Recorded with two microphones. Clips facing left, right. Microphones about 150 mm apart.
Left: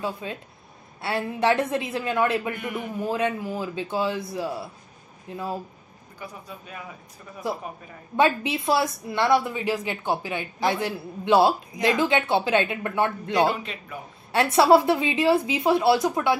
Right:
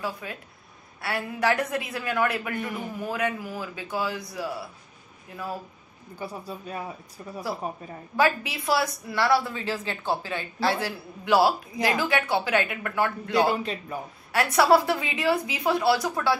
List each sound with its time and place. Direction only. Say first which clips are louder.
0.0 s a woman's voice: left 3 dB; 25° left (ahead or behind)
6.1 s speech: right 4 dB; 35° right (ahead or behind)
8.2 s a woman's voice: left 3 dB; 25° left (ahead or behind)
13.6 s speech: right 5 dB; 35° right (ahead or behind)
14.3 s a woman's voice: left 3 dB; 25° left (ahead or behind)